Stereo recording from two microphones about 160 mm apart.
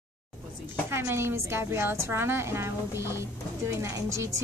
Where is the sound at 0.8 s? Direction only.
15° right (ahead or behind).